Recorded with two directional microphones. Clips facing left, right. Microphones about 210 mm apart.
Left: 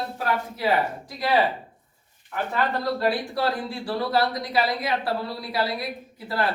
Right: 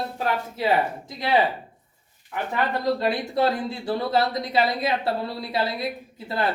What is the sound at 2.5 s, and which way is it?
Speech, 20° right (ahead or behind).